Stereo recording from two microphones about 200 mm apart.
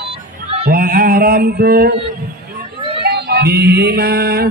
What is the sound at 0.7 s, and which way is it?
A man's voice, 45° right (ahead or behind).